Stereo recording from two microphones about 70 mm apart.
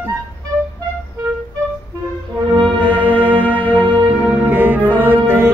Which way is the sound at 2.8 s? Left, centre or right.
Right.